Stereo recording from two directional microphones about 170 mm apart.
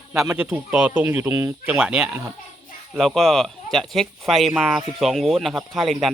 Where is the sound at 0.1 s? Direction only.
5° right (ahead or behind).